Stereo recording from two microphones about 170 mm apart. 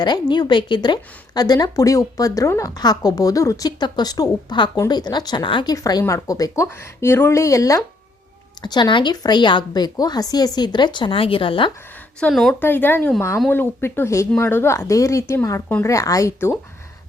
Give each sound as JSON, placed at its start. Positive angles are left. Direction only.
{"t": 0.0, "sound": "a woman's voice", "side_deg": 25}
{"t": 12.2, "sound": "a woman's voice", "side_deg": 0}
{"t": 12.6, "sound": "speech", "side_deg": 10}